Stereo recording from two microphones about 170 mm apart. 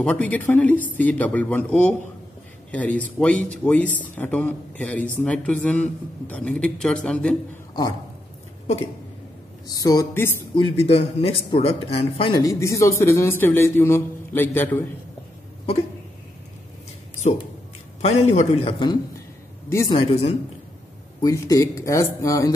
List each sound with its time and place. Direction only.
0.0 s a man's voice: 10° left (ahead or behind)
9.7 s speech: 20° left (ahead or behind)
10.5 s speech: 40° left (ahead or behind)
12.4 s a man's voice: 20° left (ahead or behind)
18.0 s speech: 40° left (ahead or behind)
19.7 s speech: 20° left (ahead or behind)
20.0 s speech: 35° left (ahead or behind)
21.2 s speech: 20° left (ahead or behind)